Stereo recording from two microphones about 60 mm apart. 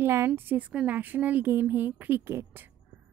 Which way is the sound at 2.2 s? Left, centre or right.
Right.